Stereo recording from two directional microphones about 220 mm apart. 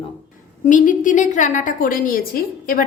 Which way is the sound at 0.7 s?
35° left (ahead or behind).